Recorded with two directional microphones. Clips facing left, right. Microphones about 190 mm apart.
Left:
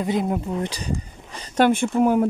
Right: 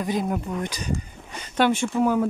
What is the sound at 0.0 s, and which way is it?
Speech, 20° left (ahead or behind).